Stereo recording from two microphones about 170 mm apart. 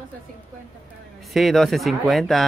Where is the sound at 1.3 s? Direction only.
Centre (ahead or behind).